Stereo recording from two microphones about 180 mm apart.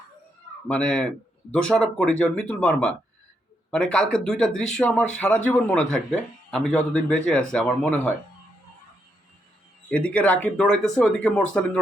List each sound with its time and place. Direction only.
0.7 s speech: 5° left (ahead or behind)
9.9 s speech: 5° left (ahead or behind)